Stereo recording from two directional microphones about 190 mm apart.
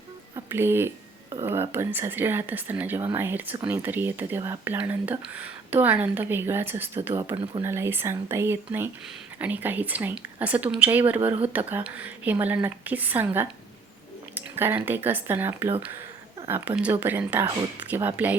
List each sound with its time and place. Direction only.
0.3 s a woman's voice: 10° right (ahead or behind)
7.3 s speech: 25° right (ahead or behind)
7.6 s a woman's voice: 15° right (ahead or behind)
14.8 s a woman's voice: 10° right (ahead or behind)